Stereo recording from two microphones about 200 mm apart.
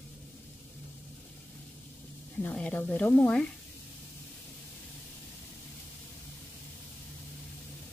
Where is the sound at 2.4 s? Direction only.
10° left (ahead or behind).